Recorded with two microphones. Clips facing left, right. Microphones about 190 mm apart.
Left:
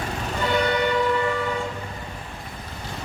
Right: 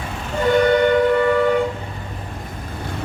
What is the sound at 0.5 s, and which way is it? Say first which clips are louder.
Train: right 8 dB; 50° right (ahead or behind).